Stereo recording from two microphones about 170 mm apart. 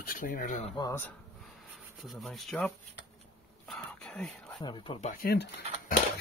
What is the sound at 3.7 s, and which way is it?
Whispering, 5° left (ahead or behind).